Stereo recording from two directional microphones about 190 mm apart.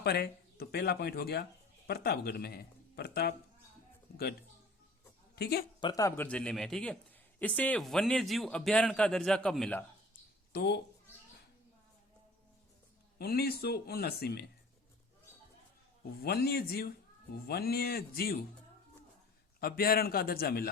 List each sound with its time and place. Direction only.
0.0 s speech: 60° left (ahead or behind)
5.4 s speech: 55° left (ahead or behind)
5.8 s a man's voice: 20° left (ahead or behind)
10.5 s speech: 60° left (ahead or behind)
13.1 s speech: 55° left (ahead or behind)
16.2 s speech: 55° left (ahead or behind)
19.5 s a man's voice: 50° left (ahead or behind)